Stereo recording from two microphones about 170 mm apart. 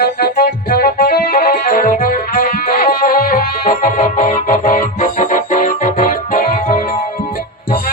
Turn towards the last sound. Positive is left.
turn(degrees=55)  # may be behind; listen again after turning